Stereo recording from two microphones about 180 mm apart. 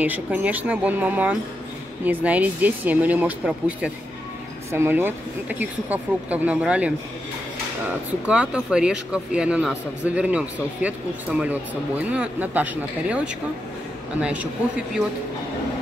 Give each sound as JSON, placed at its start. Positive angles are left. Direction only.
{"t": 0.0, "sound": "speech", "side_deg": -10}
{"t": 8.3, "sound": "a man's voice", "side_deg": -5}